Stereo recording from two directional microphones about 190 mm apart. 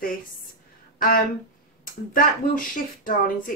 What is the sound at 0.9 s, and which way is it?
Speech, 50° left (ahead or behind).